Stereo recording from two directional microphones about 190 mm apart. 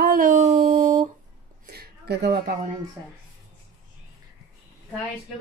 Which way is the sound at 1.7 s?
55° right (ahead or behind).